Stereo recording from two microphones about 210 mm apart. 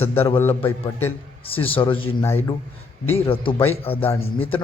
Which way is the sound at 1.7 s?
25° left (ahead or behind).